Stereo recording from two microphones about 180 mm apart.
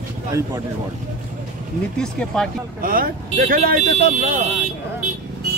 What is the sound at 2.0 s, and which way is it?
Speech, 5° left (ahead or behind).